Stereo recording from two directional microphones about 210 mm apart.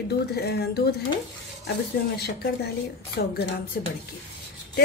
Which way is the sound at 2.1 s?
50° left (ahead or behind).